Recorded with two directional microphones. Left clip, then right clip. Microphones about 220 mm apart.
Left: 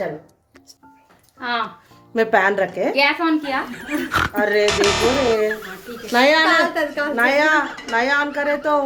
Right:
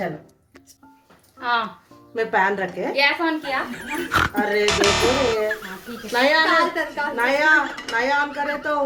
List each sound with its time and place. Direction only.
1.4 s speech: 15° left (ahead or behind)
2.1 s speech: 45° left (ahead or behind)
2.9 s speech: 25° left (ahead or behind)
3.4 s speech: centre (ahead or behind)
4.4 s a woman's voice: 35° left (ahead or behind)
4.6 s speech: centre (ahead or behind)
6.1 s a woman's voice: 45° left (ahead or behind)
8.3 s speech: centre (ahead or behind)